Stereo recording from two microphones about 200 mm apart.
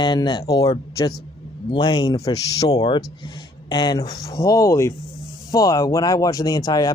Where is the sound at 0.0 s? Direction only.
20° left (ahead or behind).